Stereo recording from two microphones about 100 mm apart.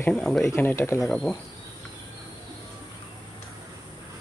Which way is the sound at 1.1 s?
10° left (ahead or behind).